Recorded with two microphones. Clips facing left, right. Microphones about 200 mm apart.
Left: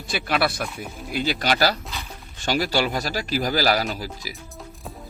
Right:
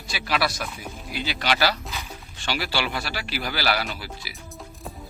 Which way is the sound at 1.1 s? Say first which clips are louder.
Left 4 dB; 45° left (ahead or behind).